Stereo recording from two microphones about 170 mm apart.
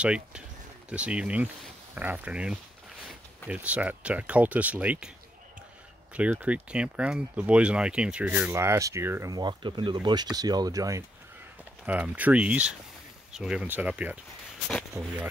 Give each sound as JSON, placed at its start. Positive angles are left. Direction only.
{"t": 0.0, "sound": "speech", "side_deg": -5}
{"t": 6.1, "sound": "speech", "side_deg": -10}
{"t": 11.8, "sound": "speech", "side_deg": -10}